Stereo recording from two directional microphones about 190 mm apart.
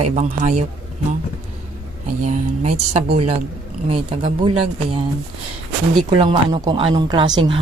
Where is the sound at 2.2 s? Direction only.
40° right (ahead or behind).